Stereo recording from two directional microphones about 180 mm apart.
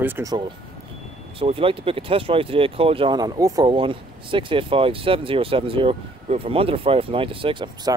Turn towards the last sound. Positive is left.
turn(degrees=-25)  # may be behind; listen again after turning